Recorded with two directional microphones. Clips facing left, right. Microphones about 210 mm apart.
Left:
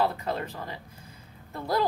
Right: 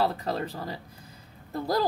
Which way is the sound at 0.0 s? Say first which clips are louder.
Even; 35° right (ahead or behind).